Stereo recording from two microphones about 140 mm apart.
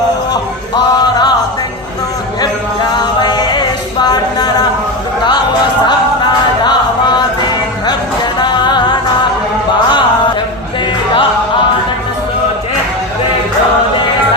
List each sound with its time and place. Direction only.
0.9 s music: 30° left (ahead or behind)
3.0 s music: 30° left (ahead or behind)
4.0 s a sound: 30° left (ahead or behind)
6.6 s music: 30° left (ahead or behind)
8.4 s music: 30° left (ahead or behind)